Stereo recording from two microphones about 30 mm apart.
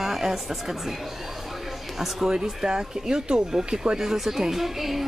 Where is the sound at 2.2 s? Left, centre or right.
Right.